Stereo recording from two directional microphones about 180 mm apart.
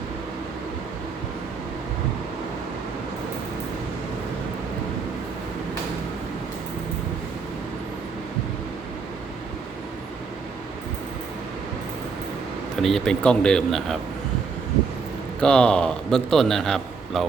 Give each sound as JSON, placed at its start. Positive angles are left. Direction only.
{"t": 12.8, "sound": "speech", "side_deg": 0}
{"t": 15.4, "sound": "a man's voice", "side_deg": 5}